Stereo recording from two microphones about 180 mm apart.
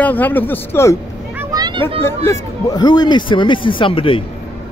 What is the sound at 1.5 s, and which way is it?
Children playing, 25° right (ahead or behind).